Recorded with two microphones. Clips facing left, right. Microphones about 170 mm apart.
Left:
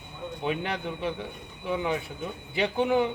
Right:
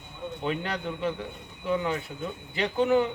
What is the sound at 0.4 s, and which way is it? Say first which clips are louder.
A man's voice: left 1 dB; 15° left (ahead or behind).